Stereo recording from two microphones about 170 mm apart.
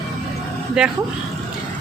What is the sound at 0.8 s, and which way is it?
Speech, 5° right (ahead or behind).